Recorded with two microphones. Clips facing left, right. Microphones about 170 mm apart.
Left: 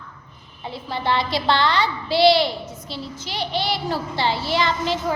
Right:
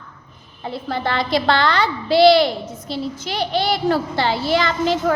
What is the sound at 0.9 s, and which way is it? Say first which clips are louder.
A woman's voice: right 1 dB; 50° right (ahead or behind).